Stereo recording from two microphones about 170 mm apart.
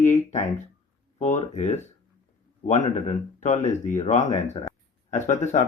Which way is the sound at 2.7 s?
40° left (ahead or behind).